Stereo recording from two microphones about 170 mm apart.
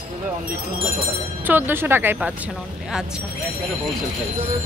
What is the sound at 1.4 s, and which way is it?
Speech, 10° right (ahead or behind).